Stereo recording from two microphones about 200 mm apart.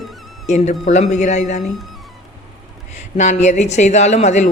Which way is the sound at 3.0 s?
35° left (ahead or behind).